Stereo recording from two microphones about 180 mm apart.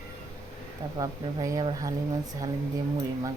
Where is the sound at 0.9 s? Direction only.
20° right (ahead or behind).